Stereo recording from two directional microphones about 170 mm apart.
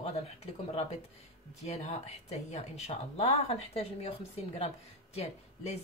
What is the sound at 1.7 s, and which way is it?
Speech, 40° left (ahead or behind).